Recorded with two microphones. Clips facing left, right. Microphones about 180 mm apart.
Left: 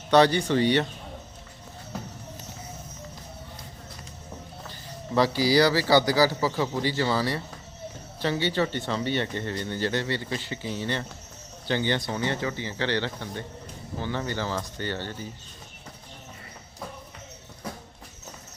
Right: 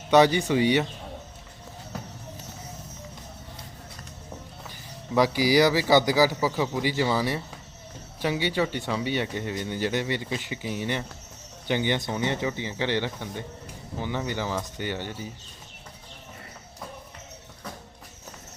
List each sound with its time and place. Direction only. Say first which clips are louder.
0.1 s speech: right 1 dB; 15° right (ahead or behind)
5.1 s speech: right 1 dB; 15° right (ahead or behind)